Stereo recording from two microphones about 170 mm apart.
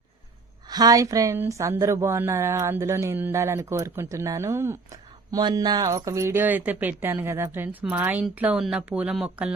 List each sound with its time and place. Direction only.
0.7 s speech: 20° right (ahead or behind); by 9.5 s 5° right (ahead or behind)